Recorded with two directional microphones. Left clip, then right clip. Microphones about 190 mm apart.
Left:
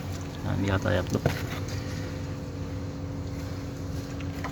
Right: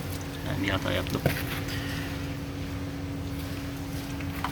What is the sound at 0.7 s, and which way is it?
Speech, 40° left (ahead or behind).